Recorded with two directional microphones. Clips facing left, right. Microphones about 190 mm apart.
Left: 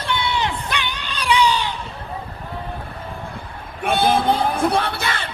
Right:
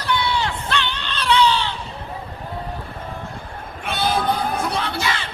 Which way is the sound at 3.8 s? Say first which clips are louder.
Left 4 dB; 50° left (ahead or behind).